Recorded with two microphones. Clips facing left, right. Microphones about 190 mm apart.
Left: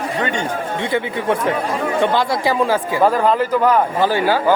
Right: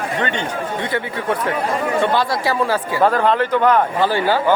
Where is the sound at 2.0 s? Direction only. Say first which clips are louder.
Left 4 dB; 20° left (ahead or behind).